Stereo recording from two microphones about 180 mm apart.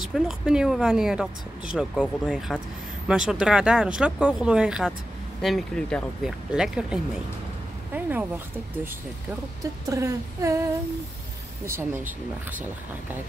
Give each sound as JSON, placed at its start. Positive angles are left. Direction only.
{"t": 0.1, "sound": "speech", "side_deg": -5}
{"t": 7.9, "sound": "a sound", "side_deg": -10}
{"t": 9.8, "sound": "humming", "side_deg": -15}